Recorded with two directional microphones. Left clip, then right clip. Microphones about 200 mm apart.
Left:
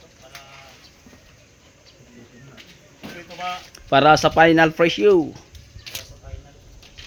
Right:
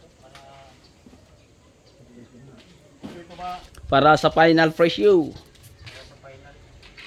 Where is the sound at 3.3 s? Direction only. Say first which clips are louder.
Left 4 dB; 20° left (ahead or behind).